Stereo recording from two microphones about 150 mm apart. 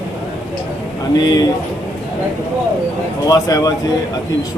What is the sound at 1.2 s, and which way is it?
Speech, 25° left (ahead or behind).